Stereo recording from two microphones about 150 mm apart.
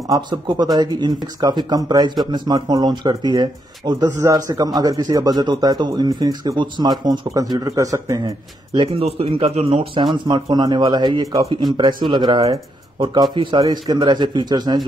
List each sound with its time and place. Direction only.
0.1 s speech: 30° right (ahead or behind)
8.7 s speech: 40° right (ahead or behind)